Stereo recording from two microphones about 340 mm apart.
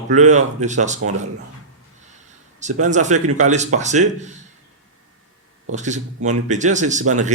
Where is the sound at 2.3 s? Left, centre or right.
Right.